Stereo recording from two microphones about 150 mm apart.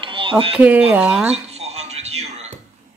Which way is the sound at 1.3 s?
45° right (ahead or behind).